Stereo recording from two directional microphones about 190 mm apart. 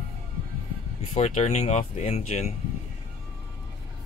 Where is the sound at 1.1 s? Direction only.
35° left (ahead or behind).